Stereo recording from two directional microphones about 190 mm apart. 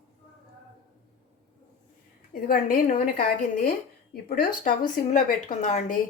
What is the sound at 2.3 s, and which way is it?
A woman's voice, 50° left (ahead or behind).